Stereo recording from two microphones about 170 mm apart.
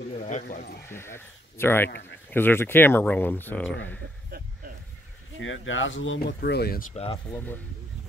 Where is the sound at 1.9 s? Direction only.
90° left.